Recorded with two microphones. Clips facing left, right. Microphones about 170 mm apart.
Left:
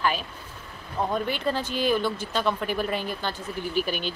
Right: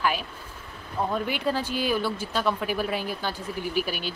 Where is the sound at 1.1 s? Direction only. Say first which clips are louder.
Even; 10° right (ahead or behind).